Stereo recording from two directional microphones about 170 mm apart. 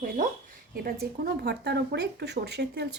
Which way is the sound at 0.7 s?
60° right (ahead or behind).